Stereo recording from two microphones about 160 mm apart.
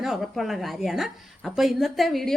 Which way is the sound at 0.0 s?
Centre (ahead or behind).